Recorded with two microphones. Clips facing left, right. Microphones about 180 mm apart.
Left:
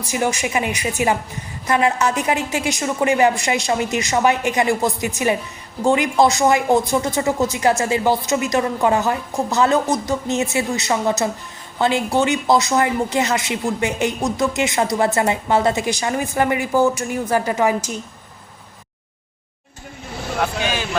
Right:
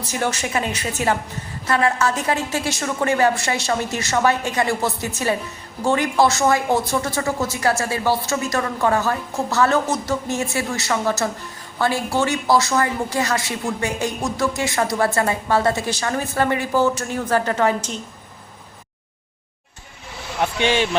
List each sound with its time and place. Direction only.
0.0 s a woman's voice: 10° left (ahead or behind)
20.6 s a man's voice: 25° right (ahead or behind)